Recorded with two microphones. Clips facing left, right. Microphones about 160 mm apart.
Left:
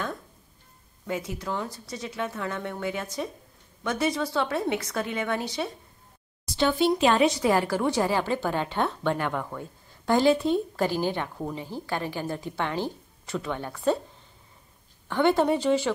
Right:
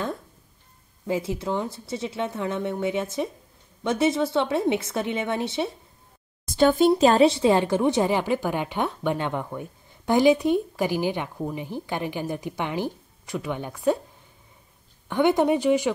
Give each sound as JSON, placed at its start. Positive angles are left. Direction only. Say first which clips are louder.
{"t": 1.0, "sound": "speech", "louder": "right 5 dB", "side_deg": -30}
{"t": 6.4, "sound": "a sound", "louder": "right 5 dB", "side_deg": -50}
{"t": 6.9, "sound": "a woman's voice", "louder": "right 4 dB", "side_deg": -35}
{"t": 15.0, "sound": "a woman's voice", "louder": "right 2 dB", "side_deg": -15}